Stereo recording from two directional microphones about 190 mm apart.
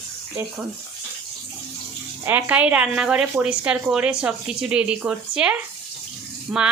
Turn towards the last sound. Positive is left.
turn(degrees=-5)  # may be behind; listen again after turning